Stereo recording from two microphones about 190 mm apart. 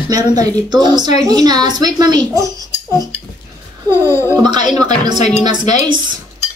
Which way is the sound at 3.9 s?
15° left (ahead or behind).